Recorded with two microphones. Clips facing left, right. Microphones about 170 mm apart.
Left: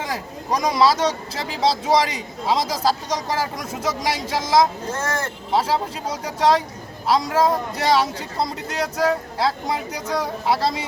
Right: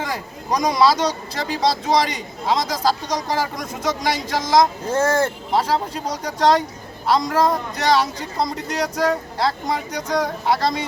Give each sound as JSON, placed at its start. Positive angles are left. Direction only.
{"t": 0.0, "sound": "speech", "side_deg": 5}
{"t": 4.9, "sound": "speech", "side_deg": -30}
{"t": 5.5, "sound": "speech", "side_deg": 5}